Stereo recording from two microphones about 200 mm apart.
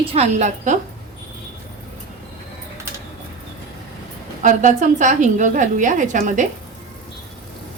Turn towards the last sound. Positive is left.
turn(degrees=-40)  # may be behind; listen again after turning